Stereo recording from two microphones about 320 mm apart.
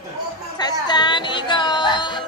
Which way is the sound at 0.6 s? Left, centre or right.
Centre.